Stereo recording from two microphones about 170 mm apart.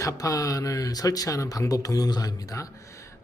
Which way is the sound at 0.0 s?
20° left (ahead or behind).